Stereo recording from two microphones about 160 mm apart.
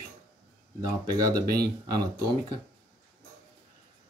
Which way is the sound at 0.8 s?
25° right (ahead or behind).